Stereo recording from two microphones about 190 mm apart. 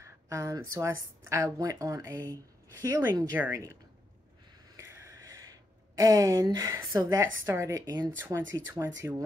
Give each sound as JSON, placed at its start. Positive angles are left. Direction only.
{"t": 0.0, "sound": "speech", "side_deg": -15}
{"t": 4.7, "sound": "a sound", "side_deg": -15}
{"t": 5.9, "sound": "a woman's voice", "side_deg": -20}